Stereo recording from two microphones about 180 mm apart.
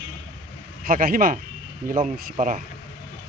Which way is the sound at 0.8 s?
50° right (ahead or behind).